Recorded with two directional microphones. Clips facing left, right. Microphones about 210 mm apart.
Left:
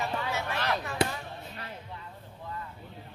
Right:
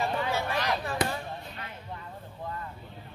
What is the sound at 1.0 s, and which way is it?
Basketball bounce, 30° left (ahead or behind).